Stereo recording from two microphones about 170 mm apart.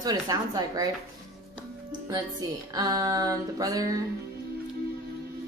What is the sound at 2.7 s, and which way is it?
A woman's voice, 20° right (ahead or behind).